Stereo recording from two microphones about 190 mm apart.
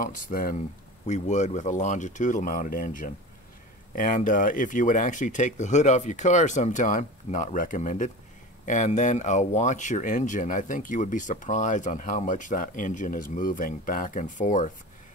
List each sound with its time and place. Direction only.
0.0 s speech: 45° left (ahead or behind)